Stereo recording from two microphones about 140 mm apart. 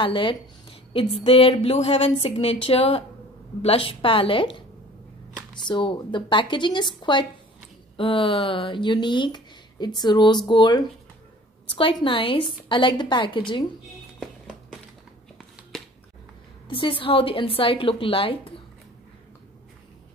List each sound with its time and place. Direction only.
0.0 s a woman's voice: 35° left (ahead or behind)
5.7 s speech: 35° left (ahead or behind)
14.2 s music: centre (ahead or behind)
16.6 s speech: 35° left (ahead or behind)